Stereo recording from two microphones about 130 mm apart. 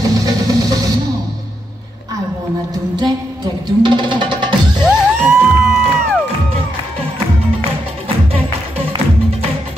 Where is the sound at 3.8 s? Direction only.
40° right (ahead or behind).